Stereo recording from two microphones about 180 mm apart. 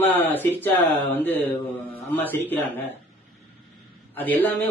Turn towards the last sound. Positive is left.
turn(degrees=10)  # may be behind; listen again after turning